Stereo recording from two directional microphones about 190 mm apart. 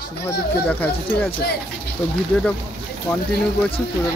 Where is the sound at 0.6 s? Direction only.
10° left (ahead or behind).